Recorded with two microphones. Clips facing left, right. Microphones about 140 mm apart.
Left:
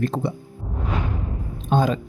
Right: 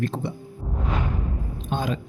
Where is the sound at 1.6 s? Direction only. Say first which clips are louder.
Left 7 dB; 40° left (ahead or behind).